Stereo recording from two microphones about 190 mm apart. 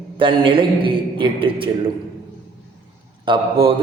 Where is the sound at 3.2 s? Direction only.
25° right (ahead or behind).